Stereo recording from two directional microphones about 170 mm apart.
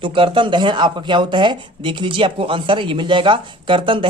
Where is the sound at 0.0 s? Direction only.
30° right (ahead or behind).